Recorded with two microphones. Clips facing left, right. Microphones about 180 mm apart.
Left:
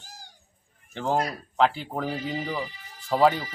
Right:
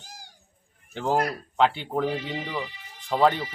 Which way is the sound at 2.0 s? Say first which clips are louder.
Right 1 dB; 40° left (ahead or behind).